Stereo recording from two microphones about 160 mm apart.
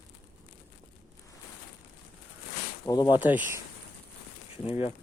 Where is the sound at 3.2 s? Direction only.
10° right (ahead or behind).